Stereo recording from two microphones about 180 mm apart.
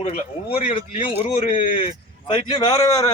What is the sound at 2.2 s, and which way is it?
Speech, 25° left (ahead or behind).